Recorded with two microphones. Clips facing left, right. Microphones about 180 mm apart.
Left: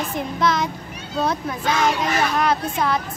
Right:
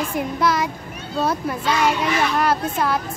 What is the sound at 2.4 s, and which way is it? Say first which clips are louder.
Speech: right 1 dB; 5° right (ahead or behind).